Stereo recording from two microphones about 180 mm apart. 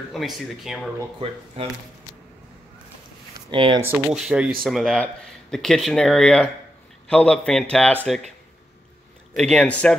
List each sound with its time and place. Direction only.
0.1 s speech: centre (ahead or behind)
1.6 s speech: 35° right (ahead or behind)
3.4 s speech: 25° right (ahead or behind)
3.8 s speech: 5° right (ahead or behind)
9.3 s speech: 5° left (ahead or behind)